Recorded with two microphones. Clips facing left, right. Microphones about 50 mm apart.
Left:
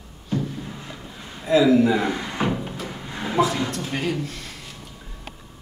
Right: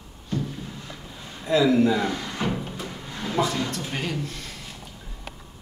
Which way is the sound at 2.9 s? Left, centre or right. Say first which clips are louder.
Left 2 dB; centre.